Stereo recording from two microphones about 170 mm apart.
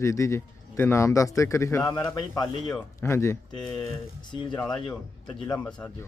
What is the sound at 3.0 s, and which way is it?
Speech, 15° left (ahead or behind).